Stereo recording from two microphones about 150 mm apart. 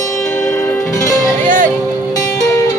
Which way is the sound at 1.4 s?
60° right (ahead or behind).